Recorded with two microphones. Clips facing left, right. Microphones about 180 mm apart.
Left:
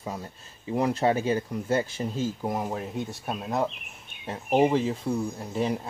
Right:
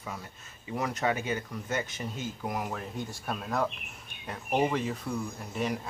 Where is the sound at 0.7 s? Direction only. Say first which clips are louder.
Left 6 dB; 30° left (ahead or behind).